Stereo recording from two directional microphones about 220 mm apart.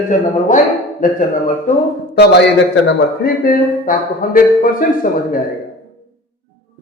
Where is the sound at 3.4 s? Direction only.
40° left (ahead or behind).